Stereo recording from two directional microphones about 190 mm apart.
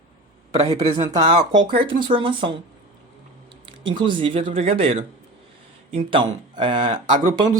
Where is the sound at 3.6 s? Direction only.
25° right (ahead or behind).